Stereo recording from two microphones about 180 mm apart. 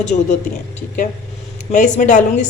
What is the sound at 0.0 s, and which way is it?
Speech, 40° left (ahead or behind).